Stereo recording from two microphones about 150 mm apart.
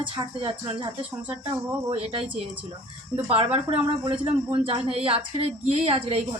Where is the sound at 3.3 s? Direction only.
40° right (ahead or behind).